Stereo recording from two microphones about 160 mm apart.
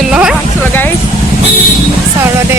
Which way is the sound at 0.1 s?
5° right (ahead or behind).